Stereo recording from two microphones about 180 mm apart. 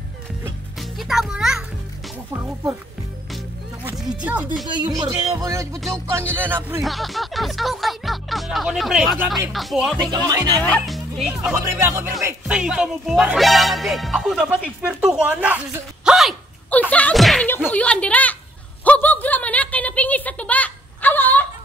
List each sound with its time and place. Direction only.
0.7 s music: centre (ahead or behind)
3.9 s music: 5° right (ahead or behind)
4.6 s speech: 20° right (ahead or behind)
6.1 s music: 10° right (ahead or behind)
6.8 s speech: centre (ahead or behind)
10.1 s speech: 20° right (ahead or behind)
10.6 s speech: 5° left (ahead or behind); by 12.4 s 15° right (ahead or behind)
12.4 s speech: 5° right (ahead or behind)
16.9 s slam: 5° left (ahead or behind)
17.6 s a woman's voice: 5° left (ahead or behind)
18.9 s a sound: 10° left (ahead or behind)